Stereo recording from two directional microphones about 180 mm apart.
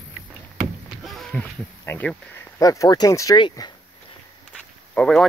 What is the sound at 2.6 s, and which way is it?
Speech, 20° left (ahead or behind).